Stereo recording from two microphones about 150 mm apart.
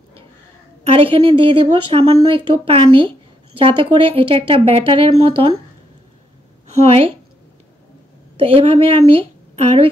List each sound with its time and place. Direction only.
0.8 s speech: 40° right (ahead or behind)
6.8 s speech: 40° right (ahead or behind)
8.4 s a woman's voice: 40° right (ahead or behind)